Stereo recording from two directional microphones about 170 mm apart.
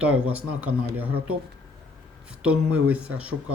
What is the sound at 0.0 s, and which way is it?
Speech, 10° right (ahead or behind).